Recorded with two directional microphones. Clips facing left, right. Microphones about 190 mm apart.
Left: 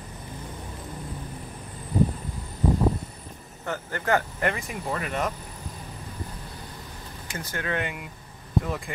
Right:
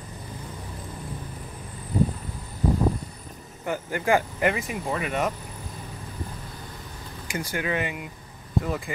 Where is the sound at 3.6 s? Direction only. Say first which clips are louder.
Right 3 dB; 10° right (ahead or behind).